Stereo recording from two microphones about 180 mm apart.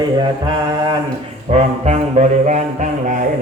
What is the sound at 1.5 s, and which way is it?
Music, 35° right (ahead or behind).